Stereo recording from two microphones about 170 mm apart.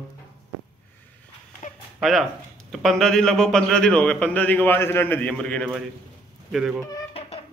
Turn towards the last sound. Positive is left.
turn(degrees=-5)  # may be behind; listen again after turning